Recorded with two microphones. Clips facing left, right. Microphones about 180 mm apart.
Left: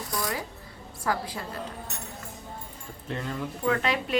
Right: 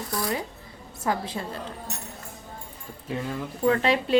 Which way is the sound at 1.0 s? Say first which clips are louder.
Right 2 dB; 25° right (ahead or behind).